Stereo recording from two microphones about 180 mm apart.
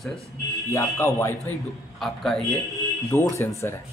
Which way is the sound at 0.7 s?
15° left (ahead or behind).